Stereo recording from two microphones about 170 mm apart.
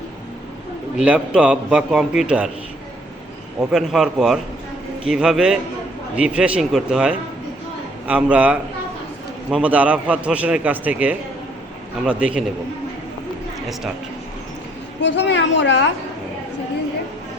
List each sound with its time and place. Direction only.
0.9 s a man's voice: 5° right (ahead or behind)
3.6 s a man's voice: 5° right (ahead or behind)
15.0 s a woman's voice: 90° left